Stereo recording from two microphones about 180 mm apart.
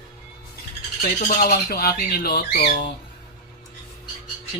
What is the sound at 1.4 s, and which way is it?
Speech, 60° left (ahead or behind).